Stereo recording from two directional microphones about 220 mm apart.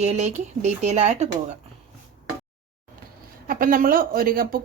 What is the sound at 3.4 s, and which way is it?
A woman's voice, 40° right (ahead or behind).